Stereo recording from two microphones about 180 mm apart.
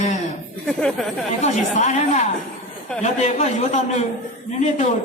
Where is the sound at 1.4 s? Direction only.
40° left (ahead or behind).